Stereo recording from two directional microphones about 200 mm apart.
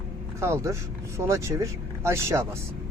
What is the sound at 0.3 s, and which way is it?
Speech, 15° right (ahead or behind).